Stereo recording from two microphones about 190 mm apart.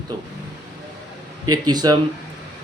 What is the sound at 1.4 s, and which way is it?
Speech, 20° right (ahead or behind).